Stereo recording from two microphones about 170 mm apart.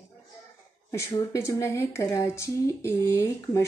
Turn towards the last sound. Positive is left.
turn(degrees=15)  # may be behind; listen again after turning